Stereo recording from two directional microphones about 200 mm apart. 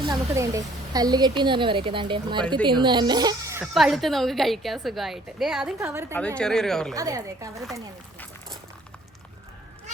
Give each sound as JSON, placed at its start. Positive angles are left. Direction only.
{"t": 0.0, "sound": "a woman's voice", "side_deg": -20}
{"t": 3.8, "sound": "a woman's voice", "side_deg": 0}
{"t": 6.1, "sound": "a woman's voice", "side_deg": 5}
{"t": 6.9, "sound": "a woman's voice", "side_deg": -15}